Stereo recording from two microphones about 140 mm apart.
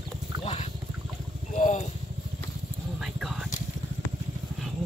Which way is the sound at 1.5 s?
60° left (ahead or behind).